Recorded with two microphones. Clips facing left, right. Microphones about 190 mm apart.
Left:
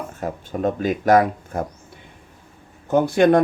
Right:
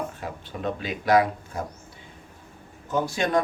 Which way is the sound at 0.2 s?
45° left (ahead or behind).